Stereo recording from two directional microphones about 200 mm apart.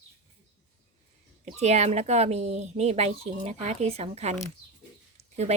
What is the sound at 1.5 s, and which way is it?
Speech, 35° right (ahead or behind).